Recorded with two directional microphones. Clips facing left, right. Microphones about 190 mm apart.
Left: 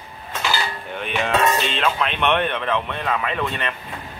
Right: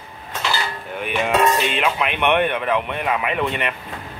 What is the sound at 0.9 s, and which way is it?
Speech, 10° right (ahead or behind).